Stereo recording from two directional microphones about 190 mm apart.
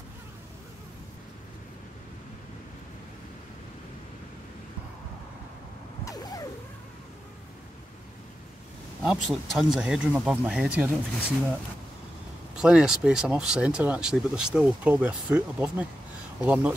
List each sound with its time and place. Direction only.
6.0 s vehicle: 20° left (ahead or behind)
9.0 s speech: centre (ahead or behind)
12.5 s speech: 5° right (ahead or behind)